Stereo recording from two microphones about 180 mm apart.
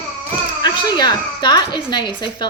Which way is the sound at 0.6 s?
25° left (ahead or behind).